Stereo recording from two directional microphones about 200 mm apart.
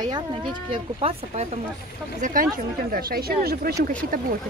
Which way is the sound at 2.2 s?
45° right (ahead or behind).